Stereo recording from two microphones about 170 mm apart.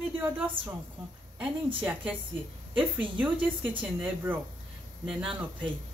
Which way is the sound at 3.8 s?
10° right (ahead or behind).